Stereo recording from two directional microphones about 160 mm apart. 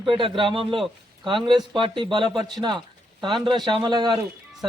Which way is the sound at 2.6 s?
30° right (ahead or behind).